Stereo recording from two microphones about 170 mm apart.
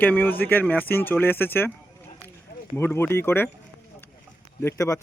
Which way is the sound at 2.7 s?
15° left (ahead or behind).